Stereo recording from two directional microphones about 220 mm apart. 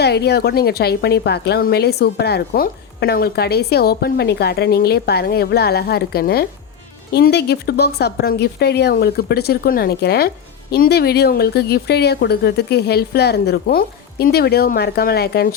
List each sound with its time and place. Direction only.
0.0 s speech: 50° left (ahead or behind)